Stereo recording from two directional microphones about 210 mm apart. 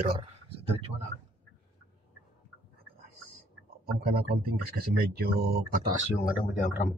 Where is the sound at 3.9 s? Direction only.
50° right (ahead or behind).